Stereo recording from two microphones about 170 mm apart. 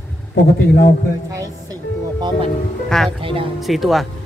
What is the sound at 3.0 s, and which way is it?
Speech, 30° right (ahead or behind).